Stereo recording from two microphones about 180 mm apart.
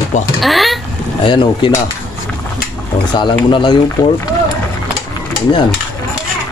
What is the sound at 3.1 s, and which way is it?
Speech, 25° left (ahead or behind).